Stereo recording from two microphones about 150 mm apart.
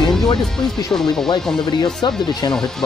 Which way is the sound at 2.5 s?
5° left (ahead or behind).